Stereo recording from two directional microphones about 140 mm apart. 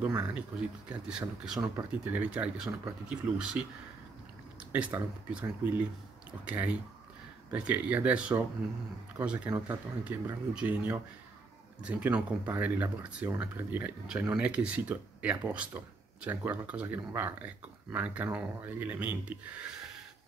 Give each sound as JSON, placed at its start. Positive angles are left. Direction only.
{"t": 0.8, "sound": "speech", "side_deg": -5}
{"t": 4.7, "sound": "speech", "side_deg": -10}